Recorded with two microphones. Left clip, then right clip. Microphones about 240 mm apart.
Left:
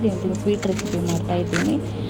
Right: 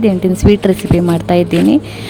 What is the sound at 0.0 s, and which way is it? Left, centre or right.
Speech, right.